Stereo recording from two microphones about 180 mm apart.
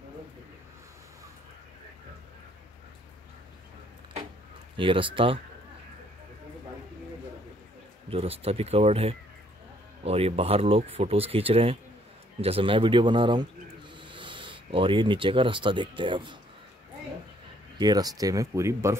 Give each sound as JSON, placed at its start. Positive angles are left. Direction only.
{"t": 4.7, "sound": "speech", "side_deg": -30}
{"t": 8.1, "sound": "speech", "side_deg": -35}
{"t": 13.9, "sound": "a sound", "side_deg": -25}
{"t": 16.0, "sound": "speech", "side_deg": -25}
{"t": 17.7, "sound": "speech", "side_deg": -20}